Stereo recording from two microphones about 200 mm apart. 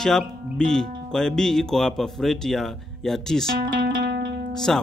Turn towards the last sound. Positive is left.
turn(degrees=0)  # may be behind; listen again after turning